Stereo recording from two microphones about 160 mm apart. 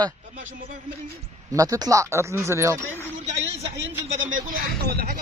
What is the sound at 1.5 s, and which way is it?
Speech, 20° right (ahead or behind).